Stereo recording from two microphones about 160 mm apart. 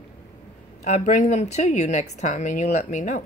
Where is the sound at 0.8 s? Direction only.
50° left (ahead or behind).